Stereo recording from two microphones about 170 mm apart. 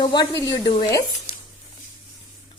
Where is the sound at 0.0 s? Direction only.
25° left (ahead or behind).